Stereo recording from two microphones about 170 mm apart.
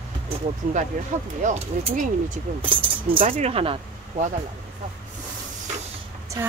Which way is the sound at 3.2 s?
45° right (ahead or behind).